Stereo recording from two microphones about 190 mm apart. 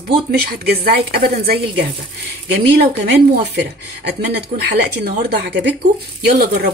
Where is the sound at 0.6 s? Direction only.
55° right (ahead or behind).